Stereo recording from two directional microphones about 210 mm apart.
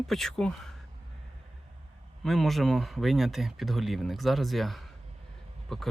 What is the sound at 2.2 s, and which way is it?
Speech, centre (ahead or behind).